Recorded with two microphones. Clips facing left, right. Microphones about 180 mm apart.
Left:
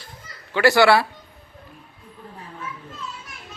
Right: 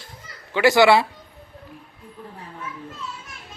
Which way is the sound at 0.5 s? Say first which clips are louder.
Right 1 dB; 20° right (ahead or behind).